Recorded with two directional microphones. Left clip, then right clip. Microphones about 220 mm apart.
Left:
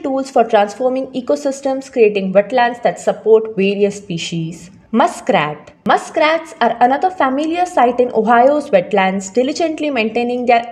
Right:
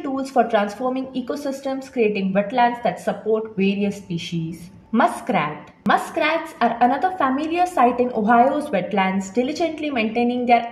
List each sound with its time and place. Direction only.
0.0 s a woman's voice: 40° left (ahead or behind)